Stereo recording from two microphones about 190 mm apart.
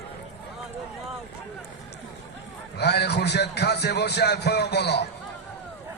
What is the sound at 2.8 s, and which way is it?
A man's voice, 60° left (ahead or behind).